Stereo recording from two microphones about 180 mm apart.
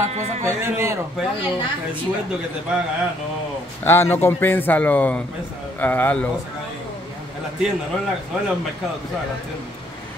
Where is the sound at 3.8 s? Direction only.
15° left (ahead or behind).